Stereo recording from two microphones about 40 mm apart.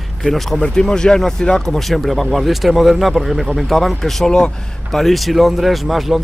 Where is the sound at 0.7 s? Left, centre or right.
Centre.